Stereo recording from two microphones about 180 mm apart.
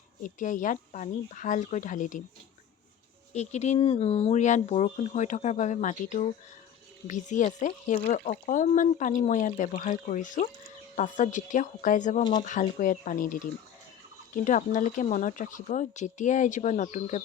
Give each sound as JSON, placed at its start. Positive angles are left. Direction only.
{"t": 0.2, "sound": "speech", "side_deg": 45}
{"t": 3.3, "sound": "speech", "side_deg": 40}